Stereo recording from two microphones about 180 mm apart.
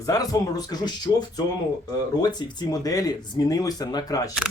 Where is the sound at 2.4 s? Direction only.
25° left (ahead or behind).